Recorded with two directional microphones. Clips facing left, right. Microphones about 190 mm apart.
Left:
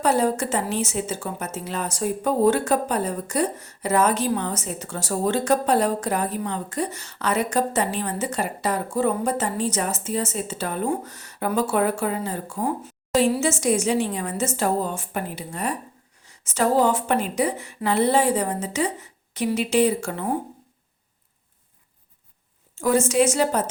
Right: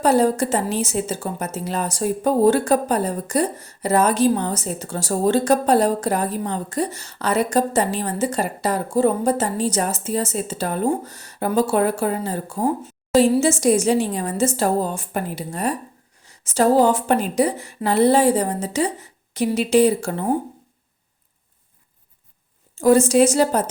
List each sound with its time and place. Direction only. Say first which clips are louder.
0.0 s a woman's voice: right 4 dB; 35° right (ahead or behind)
22.7 s a woman's voice: right 6 dB; 35° right (ahead or behind)